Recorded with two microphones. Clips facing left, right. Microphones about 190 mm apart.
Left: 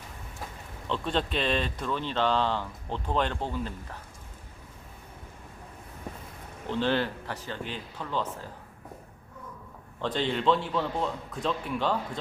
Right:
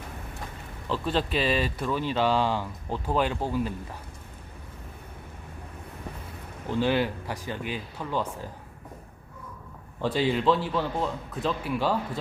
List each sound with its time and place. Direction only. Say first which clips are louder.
0.9 s speech: right 2 dB; 5° right (ahead or behind)
6.7 s speech: right 2 dB; 10° right (ahead or behind)
10.0 s a man's voice: right 3 dB; 10° right (ahead or behind)